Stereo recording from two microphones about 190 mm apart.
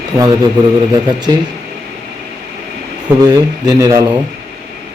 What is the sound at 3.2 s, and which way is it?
Speech, 20° right (ahead or behind).